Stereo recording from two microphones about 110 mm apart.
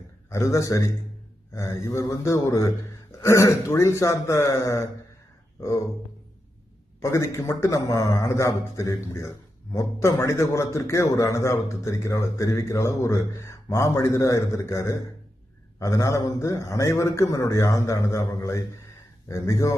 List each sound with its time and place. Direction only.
0.3 s a man's voice: 25° left (ahead or behind)
7.0 s a man's voice: 25° left (ahead or behind)